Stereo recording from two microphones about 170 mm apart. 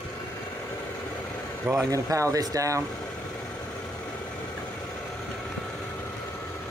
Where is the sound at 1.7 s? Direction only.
20° right (ahead or behind).